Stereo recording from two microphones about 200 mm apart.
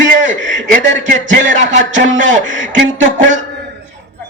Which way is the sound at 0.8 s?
65° right (ahead or behind).